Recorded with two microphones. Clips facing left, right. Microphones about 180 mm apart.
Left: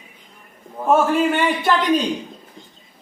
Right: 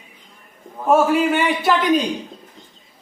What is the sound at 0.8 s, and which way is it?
A man's voice, 5° right (ahead or behind).